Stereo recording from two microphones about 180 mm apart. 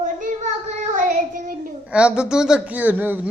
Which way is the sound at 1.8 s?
5° right (ahead or behind).